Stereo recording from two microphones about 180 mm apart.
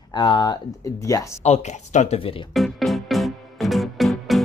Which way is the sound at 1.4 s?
40° left (ahead or behind).